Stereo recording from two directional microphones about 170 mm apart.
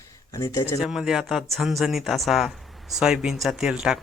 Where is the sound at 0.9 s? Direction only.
Centre (ahead or behind).